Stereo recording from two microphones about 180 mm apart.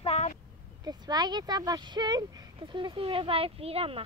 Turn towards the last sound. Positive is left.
turn(degrees=-35)  # may be behind; listen again after turning